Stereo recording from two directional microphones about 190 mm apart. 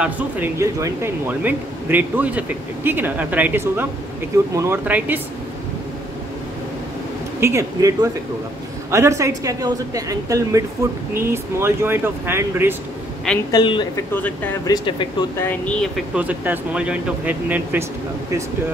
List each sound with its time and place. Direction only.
0.0 s speech: 10° right (ahead or behind)
7.3 s speech: 15° right (ahead or behind)
13.5 s speech: 25° left (ahead or behind)
14.1 s speech: 10° left (ahead or behind)
14.7 s speech: 25° left (ahead or behind)
15.4 s speech: 10° left (ahead or behind)
16.2 s speech: 10° right (ahead or behind)